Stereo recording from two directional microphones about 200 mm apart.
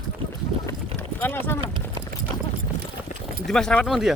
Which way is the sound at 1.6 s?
25° right (ahead or behind).